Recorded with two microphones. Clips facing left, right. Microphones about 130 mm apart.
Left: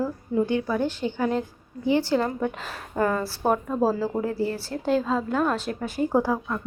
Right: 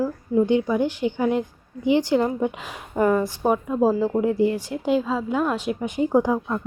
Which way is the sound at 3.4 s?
5° right (ahead or behind).